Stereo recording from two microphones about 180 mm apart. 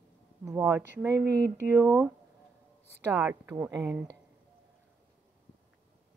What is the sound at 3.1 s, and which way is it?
Speech, 15° right (ahead or behind).